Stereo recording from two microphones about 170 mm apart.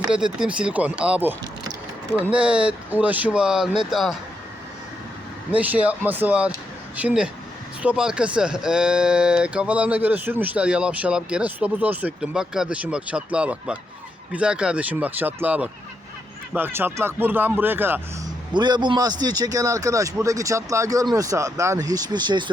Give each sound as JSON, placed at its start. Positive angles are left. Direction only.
{"t": 0.1, "sound": "speech", "side_deg": -5}
{"t": 5.5, "sound": "speech", "side_deg": -10}
{"t": 18.5, "sound": "a man's voice", "side_deg": -25}